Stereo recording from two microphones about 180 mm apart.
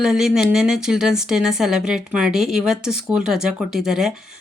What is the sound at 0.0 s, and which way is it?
Speech, 5° right (ahead or behind).